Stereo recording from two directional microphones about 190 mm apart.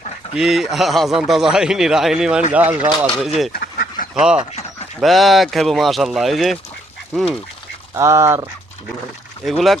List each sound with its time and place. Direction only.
0.3 s a man's voice: centre (ahead or behind)
3.5 s duck: 55° left (ahead or behind)
4.1 s a man's voice: 5° right (ahead or behind)
7.9 s speech: 15° right (ahead or behind)
9.4 s a man's voice: centre (ahead or behind)